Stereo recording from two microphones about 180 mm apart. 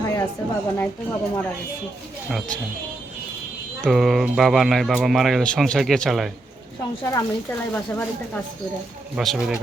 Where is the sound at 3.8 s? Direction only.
Centre (ahead or behind).